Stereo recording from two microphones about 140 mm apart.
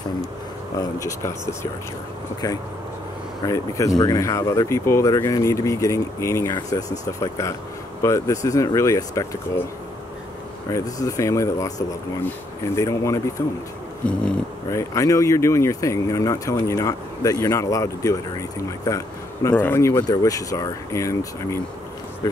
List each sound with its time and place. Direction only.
0.7 s speech: 25° left (ahead or behind)
3.4 s speech: 25° left (ahead or behind)
10.7 s speech: 25° left (ahead or behind)
14.0 s dog: 5° left (ahead or behind)
14.7 s speech: 20° left (ahead or behind)